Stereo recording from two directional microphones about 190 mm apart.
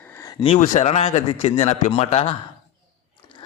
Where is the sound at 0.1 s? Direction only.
15° left (ahead or behind).